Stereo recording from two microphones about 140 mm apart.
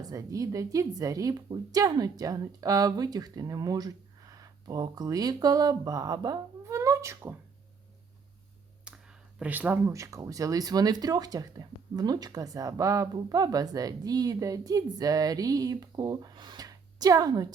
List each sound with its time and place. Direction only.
0.0 s speech: 25° right (ahead or behind)
8.8 s speech: 5° right (ahead or behind); by 17.5 s 25° right (ahead or behind)